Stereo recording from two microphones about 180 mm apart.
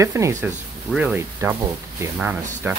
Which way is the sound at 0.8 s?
5° right (ahead or behind).